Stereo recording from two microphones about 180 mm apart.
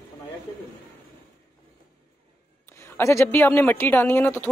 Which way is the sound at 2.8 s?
15° left (ahead or behind).